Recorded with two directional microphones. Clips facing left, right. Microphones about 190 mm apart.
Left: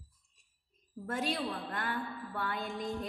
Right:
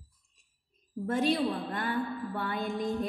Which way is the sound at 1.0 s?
20° right (ahead or behind).